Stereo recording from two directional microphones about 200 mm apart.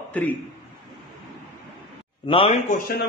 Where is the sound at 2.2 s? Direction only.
25° left (ahead or behind).